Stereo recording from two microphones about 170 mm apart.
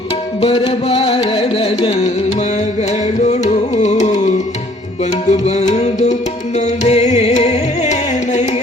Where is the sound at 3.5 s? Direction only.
45° left (ahead or behind).